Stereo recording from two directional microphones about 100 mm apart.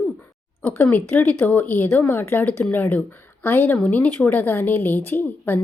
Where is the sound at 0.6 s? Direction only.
20° left (ahead or behind).